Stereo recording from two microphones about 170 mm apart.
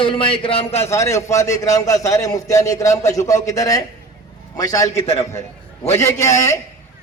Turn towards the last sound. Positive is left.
turn(degrees=15)  # may be behind; listen again after turning